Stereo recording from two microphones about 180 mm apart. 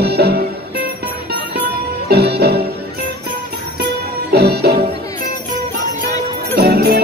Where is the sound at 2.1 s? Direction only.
60° right (ahead or behind).